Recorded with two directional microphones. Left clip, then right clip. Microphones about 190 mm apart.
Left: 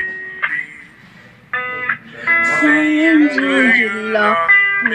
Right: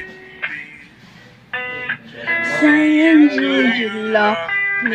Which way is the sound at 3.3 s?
15° left (ahead or behind).